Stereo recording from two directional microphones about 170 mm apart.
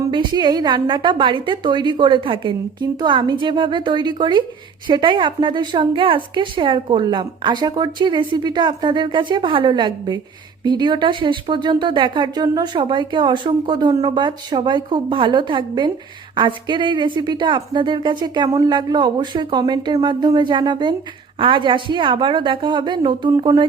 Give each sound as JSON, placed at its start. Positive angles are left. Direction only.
{"t": 0.0, "sound": "speech", "side_deg": -25}